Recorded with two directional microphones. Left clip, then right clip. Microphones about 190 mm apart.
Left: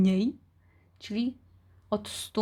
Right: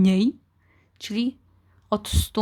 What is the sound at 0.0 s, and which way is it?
Speech, 20° right (ahead or behind).